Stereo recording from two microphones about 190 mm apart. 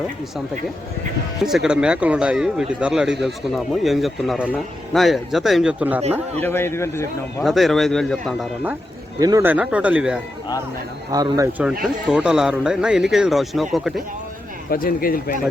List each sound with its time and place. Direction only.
1.5 s speech: 5° right (ahead or behind)
6.4 s a man's voice: 10° left (ahead or behind)
7.4 s speech: centre (ahead or behind)
9.1 s speech: 20° right (ahead or behind)
11.1 s speech: 20° right (ahead or behind)
12.0 s speech: 5° right (ahead or behind)
14.7 s speech: 50° left (ahead or behind)